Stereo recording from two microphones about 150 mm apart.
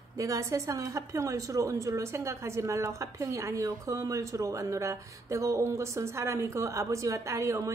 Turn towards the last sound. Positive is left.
turn(degrees=-20)  # may be behind; listen again after turning